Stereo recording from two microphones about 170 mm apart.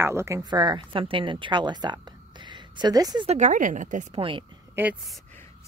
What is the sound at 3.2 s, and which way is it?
Speech, 45° right (ahead or behind).